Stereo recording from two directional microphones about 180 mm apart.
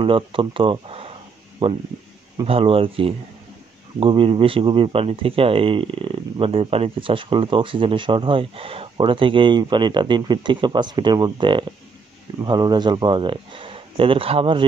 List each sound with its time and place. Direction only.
0.0 s speech: 30° right (ahead or behind)